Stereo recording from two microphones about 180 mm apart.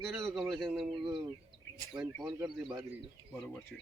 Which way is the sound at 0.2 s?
15° right (ahead or behind).